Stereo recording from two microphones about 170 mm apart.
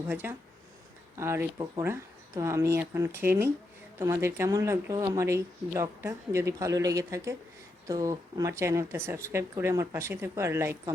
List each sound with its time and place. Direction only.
0.1 s speech: 10° right (ahead or behind)